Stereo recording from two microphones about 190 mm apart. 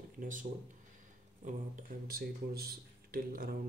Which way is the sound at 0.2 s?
45° right (ahead or behind).